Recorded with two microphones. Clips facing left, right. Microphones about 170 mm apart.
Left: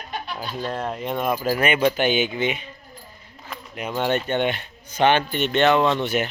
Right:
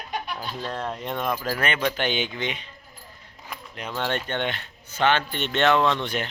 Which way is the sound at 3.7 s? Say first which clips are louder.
Left 5 dB; 10° left (ahead or behind).